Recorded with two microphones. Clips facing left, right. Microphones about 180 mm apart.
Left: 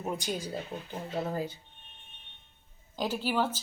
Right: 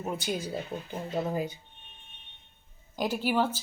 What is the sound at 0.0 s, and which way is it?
A woman's voice, 5° right (ahead or behind).